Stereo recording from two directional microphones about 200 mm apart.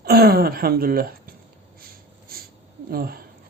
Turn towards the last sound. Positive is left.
turn(degrees=-50)  # may be behind; listen again after turning